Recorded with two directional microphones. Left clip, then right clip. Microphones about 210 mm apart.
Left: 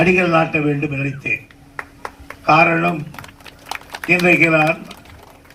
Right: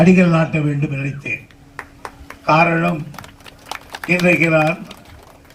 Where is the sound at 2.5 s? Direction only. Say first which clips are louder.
Left 1 dB; 45° left (ahead or behind).